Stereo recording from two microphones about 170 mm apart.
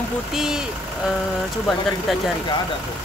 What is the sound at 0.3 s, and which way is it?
Speech, 5° right (ahead or behind).